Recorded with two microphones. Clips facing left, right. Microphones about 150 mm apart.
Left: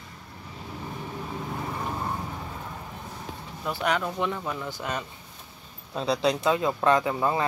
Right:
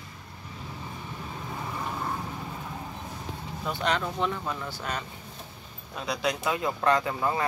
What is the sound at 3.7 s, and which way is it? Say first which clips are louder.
Speech: left 2 dB; 10° left (ahead or behind).